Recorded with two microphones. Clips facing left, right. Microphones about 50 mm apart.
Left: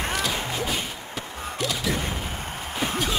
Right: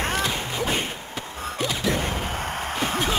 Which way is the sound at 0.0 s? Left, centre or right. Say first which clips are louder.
Right 2 dB; centre.